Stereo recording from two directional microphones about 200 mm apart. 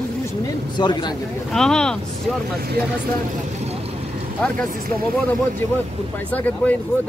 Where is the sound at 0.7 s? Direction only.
20° left (ahead or behind).